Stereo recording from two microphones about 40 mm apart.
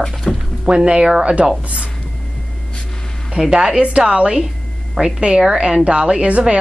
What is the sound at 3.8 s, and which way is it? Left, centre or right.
A woman's voice, right.